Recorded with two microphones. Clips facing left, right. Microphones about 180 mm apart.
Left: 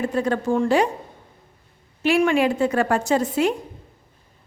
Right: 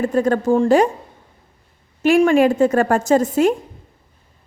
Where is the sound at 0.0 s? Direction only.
45° right (ahead or behind).